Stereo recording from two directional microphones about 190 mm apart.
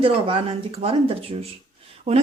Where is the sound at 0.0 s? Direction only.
30° right (ahead or behind).